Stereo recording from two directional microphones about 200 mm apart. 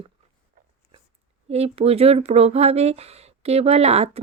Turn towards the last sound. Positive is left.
turn(degrees=-30)  # may be behind; listen again after turning